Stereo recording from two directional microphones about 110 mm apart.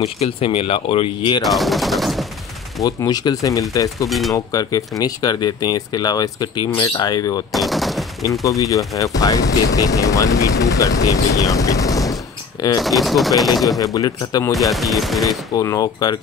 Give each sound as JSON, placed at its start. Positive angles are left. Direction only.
{"t": 0.2, "sound": "speech", "side_deg": 60}
{"t": 1.4, "sound": "speech", "side_deg": 0}
{"t": 2.8, "sound": "speech", "side_deg": 35}
{"t": 7.5, "sound": "machine gun", "side_deg": 0}
{"t": 8.5, "sound": "speech", "side_deg": 30}
{"t": 12.8, "sound": "speech", "side_deg": 0}
{"t": 13.7, "sound": "speech", "side_deg": 35}
{"t": 14.5, "sound": "speech", "side_deg": 0}
{"t": 15.2, "sound": "speech", "side_deg": 30}